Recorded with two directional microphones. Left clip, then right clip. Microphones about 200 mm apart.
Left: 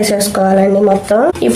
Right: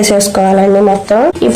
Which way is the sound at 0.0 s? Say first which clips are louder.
Right 3 dB; 35° right (ahead or behind).